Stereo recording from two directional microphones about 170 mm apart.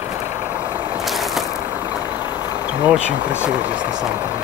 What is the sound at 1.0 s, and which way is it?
Ratchet, centre (ahead or behind).